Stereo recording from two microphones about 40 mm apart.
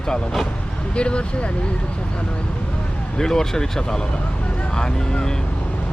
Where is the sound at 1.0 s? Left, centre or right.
Left.